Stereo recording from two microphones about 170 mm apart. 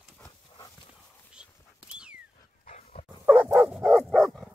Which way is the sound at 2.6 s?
45° left (ahead or behind).